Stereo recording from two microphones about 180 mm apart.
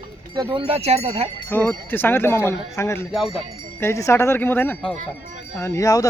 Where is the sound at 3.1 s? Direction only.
Centre (ahead or behind).